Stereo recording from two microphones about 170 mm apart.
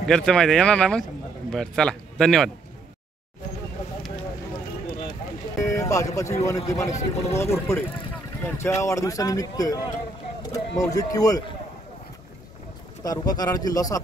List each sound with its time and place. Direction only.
0.0 s speech: 5° left (ahead or behind)
5.6 s music: 15° left (ahead or behind)
6.4 s a man's voice: 20° left (ahead or behind)
10.8 s a man's voice: 20° left (ahead or behind)
13.0 s a man's voice: 20° left (ahead or behind)